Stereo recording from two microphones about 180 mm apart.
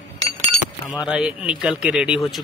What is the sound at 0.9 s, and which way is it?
Speech, 5° right (ahead or behind).